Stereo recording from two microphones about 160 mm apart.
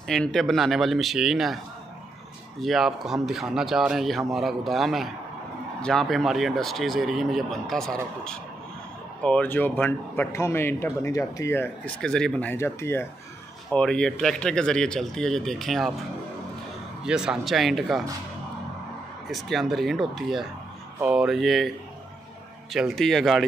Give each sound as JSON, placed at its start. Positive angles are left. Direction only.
{"t": 0.1, "sound": "speech", "side_deg": 5}
{"t": 2.6, "sound": "a man's voice", "side_deg": 0}
{"t": 17.0, "sound": "speech", "side_deg": -5}
{"t": 19.3, "sound": "speech", "side_deg": 0}